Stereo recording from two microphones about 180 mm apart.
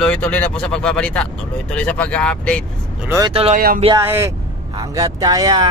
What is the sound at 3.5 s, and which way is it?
Speech, 50° right (ahead or behind).